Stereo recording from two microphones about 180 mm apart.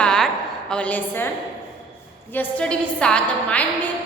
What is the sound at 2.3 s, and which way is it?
A woman's voice, 10° left (ahead or behind).